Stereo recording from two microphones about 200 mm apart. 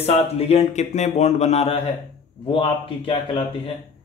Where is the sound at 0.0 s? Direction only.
30° left (ahead or behind).